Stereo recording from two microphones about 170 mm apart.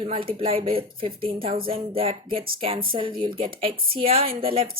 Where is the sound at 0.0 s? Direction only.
30° right (ahead or behind).